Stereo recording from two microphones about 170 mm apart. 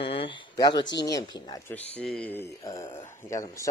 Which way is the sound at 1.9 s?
5° left (ahead or behind).